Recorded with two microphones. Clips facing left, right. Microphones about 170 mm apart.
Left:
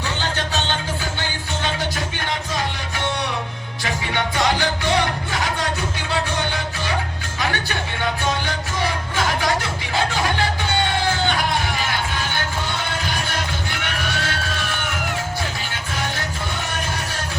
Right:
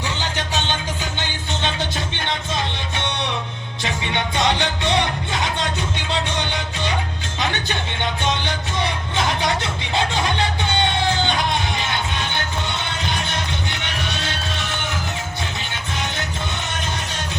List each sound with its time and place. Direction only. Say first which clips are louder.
0.2 s music: left 1 dB; 15° right (ahead or behind)
3.8 s music: even; 25° right (ahead or behind)
7.3 s music: even; 20° right (ahead or behind)
14.0 s a sound: left 1 dB; 20° right (ahead or behind)